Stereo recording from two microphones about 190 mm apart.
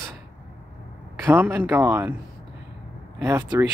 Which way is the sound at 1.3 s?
10° right (ahead or behind).